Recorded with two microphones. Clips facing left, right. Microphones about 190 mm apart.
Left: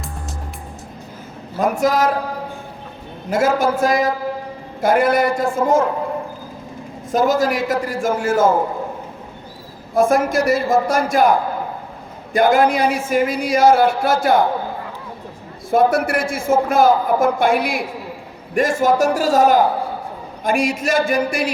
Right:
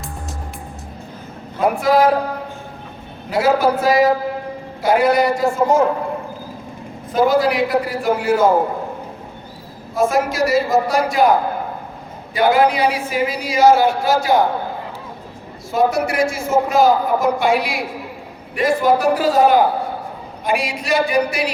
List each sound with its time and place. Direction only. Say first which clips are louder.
1.5 s a man's voice: right 1 dB; 45° left (ahead or behind)
3.2 s a man's voice: right 1 dB; 45° left (ahead or behind)
7.1 s a man's voice: right 1 dB; 45° left (ahead or behind)
9.9 s a man's voice: left 2 dB; 50° left (ahead or behind)
12.3 s a man's voice: left 1 dB; 50° left (ahead or behind)
15.7 s a man's voice: left 2 dB; 55° left (ahead or behind)